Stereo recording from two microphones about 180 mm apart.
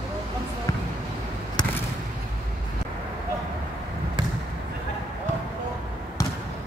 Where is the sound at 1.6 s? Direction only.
25° left (ahead or behind).